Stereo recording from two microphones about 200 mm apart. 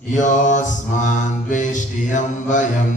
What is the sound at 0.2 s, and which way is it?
Mantra, 40° left (ahead or behind).